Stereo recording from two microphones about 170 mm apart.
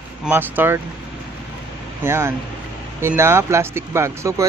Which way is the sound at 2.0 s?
15° right (ahead or behind).